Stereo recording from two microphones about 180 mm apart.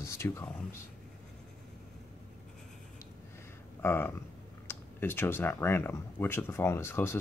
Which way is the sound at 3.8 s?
10° left (ahead or behind).